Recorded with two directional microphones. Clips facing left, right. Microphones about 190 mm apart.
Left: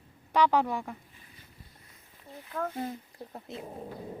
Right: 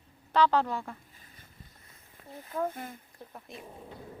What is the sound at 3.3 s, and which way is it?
Speech, 30° left (ahead or behind).